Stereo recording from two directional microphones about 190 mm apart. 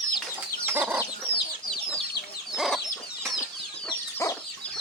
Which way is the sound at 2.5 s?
Centre (ahead or behind).